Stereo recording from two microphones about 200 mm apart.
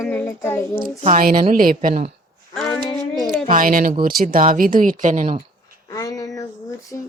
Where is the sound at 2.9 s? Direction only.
Centre (ahead or behind).